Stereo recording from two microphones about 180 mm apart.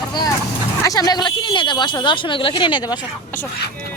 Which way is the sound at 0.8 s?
20° left (ahead or behind).